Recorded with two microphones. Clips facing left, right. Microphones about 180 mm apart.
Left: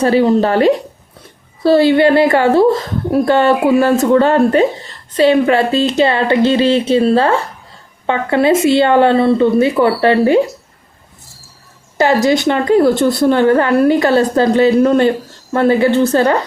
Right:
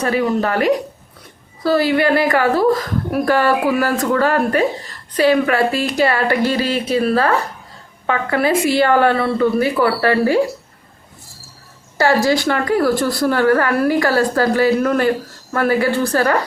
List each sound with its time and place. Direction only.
0.0 s speech: 30° left (ahead or behind)
11.9 s speech: 20° left (ahead or behind)